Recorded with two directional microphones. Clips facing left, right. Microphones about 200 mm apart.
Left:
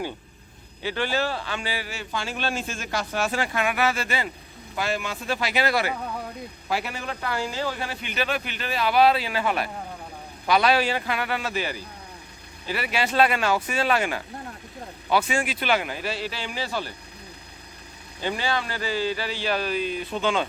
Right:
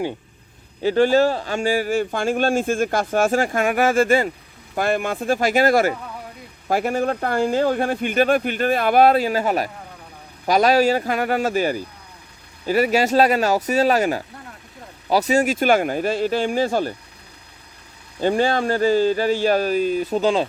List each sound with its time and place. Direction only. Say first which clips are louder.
0.8 s speech: right 11 dB; 40° right (ahead or behind)
18.2 s speech: right 9 dB; 45° right (ahead or behind)